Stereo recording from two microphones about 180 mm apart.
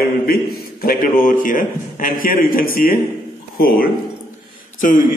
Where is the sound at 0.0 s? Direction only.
55° left (ahead or behind).